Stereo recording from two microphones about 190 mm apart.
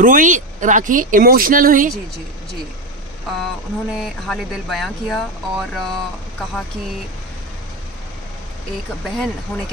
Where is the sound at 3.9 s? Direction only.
Centre (ahead or behind).